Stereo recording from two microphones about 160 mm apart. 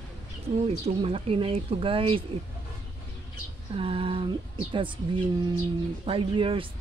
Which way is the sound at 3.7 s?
35° right (ahead or behind).